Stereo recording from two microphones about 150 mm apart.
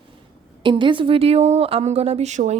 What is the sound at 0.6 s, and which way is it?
A woman's voice, 35° right (ahead or behind).